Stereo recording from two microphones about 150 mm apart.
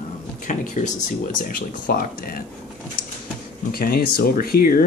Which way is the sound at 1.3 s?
65° left (ahead or behind).